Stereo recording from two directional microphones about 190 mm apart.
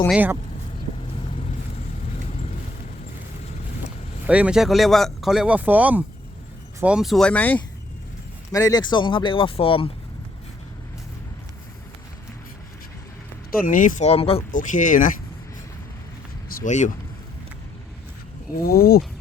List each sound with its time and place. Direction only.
0.1 s speech: 10° right (ahead or behind)
1.3 s vehicle: 30° left (ahead or behind)
3.8 s speech: 5° right (ahead or behind)
8.5 s speech: 20° left (ahead or behind)
13.7 s speech: 45° left (ahead or behind)
14.5 s speech: 45° left (ahead or behind)
16.6 s speech: 40° left (ahead or behind)
18.6 s speech: 50° left (ahead or behind)